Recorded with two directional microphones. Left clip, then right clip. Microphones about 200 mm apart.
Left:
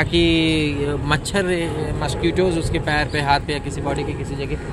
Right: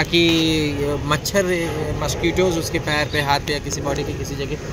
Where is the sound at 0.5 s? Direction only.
30° left (ahead or behind).